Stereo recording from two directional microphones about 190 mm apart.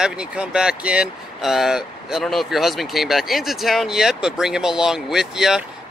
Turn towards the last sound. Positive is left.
turn(degrees=-5)  # may be behind; listen again after turning